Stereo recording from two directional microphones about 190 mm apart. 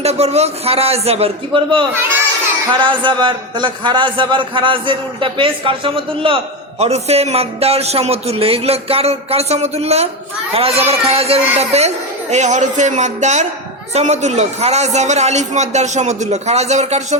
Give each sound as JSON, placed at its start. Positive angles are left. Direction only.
{"t": 0.0, "sound": "a man's voice", "side_deg": -35}